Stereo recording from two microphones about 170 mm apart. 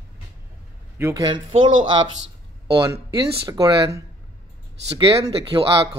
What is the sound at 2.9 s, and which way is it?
Speech, 20° right (ahead or behind).